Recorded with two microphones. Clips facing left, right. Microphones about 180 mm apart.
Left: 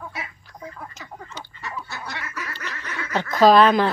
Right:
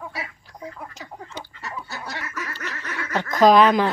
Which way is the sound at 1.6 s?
40° right (ahead or behind).